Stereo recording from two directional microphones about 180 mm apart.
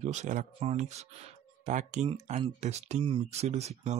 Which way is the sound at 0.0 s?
40° right (ahead or behind).